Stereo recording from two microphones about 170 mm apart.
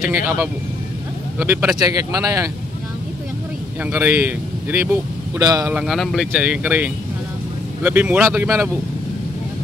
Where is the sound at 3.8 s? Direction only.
10° right (ahead or behind).